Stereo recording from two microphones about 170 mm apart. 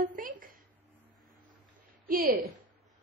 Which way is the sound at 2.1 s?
55° right (ahead or behind).